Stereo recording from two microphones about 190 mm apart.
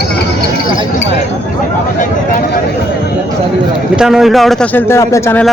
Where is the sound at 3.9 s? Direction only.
5° right (ahead or behind).